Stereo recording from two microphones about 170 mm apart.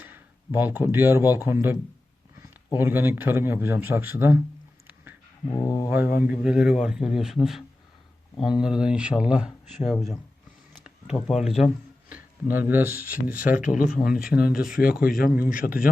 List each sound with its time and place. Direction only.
0.0 s a man's voice: 10° right (ahead or behind)
5.5 s speech: 20° left (ahead or behind)
5.9 s a man's voice: 10° right (ahead or behind)
13.2 s a man's voice: 55° left (ahead or behind)